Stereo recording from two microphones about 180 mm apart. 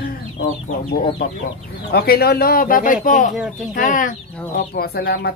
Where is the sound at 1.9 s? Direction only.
60° left (ahead or behind).